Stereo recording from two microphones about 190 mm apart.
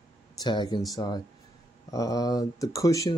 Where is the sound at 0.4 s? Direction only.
20° left (ahead or behind).